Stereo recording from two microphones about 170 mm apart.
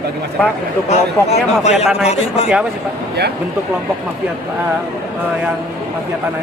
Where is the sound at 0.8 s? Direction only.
40° left (ahead or behind).